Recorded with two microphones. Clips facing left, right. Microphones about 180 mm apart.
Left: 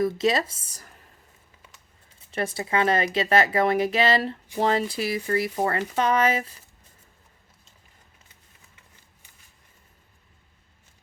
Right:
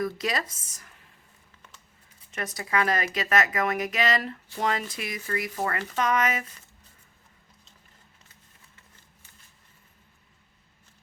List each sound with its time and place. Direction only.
0.0 s speech: 25° left (ahead or behind)
2.3 s speech: 30° left (ahead or behind)